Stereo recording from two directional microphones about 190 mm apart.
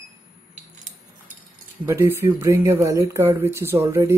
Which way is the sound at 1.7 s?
15° right (ahead or behind).